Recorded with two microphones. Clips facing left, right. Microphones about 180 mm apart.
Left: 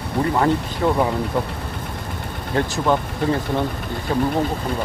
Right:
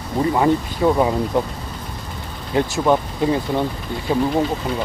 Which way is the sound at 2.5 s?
15° right (ahead or behind).